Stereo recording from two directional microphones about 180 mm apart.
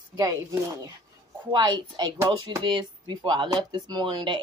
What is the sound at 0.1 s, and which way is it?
Speech, 20° right (ahead or behind).